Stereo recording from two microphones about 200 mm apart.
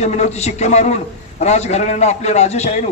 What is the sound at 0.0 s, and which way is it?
A man's voice, 35° left (ahead or behind).